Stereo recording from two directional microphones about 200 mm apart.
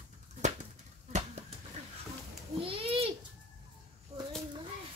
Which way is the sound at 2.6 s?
25° right (ahead or behind).